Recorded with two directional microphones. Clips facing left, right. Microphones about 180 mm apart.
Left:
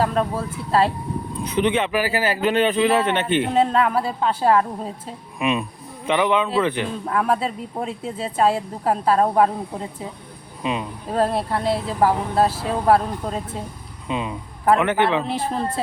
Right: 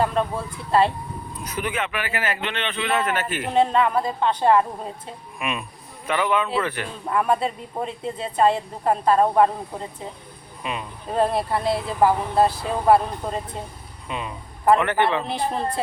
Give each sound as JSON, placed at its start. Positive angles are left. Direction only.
{"t": 0.0, "sound": "speech", "side_deg": 0}
{"t": 1.5, "sound": "speech", "side_deg": 25}
{"t": 3.5, "sound": "speech", "side_deg": 0}
{"t": 5.4, "sound": "speech", "side_deg": 20}
{"t": 7.1, "sound": "speech", "side_deg": 0}
{"t": 10.6, "sound": "speech", "side_deg": 20}
{"t": 11.1, "sound": "speech", "side_deg": 0}
{"t": 14.1, "sound": "speech", "side_deg": 20}
{"t": 15.2, "sound": "speech", "side_deg": 0}